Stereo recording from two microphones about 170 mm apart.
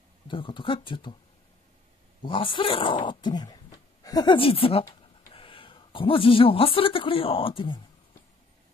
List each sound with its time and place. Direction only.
0.3 s speech: 30° left (ahead or behind)
2.2 s speech: 30° left (ahead or behind)